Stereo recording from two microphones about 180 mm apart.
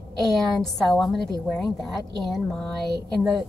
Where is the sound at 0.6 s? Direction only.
Centre (ahead or behind).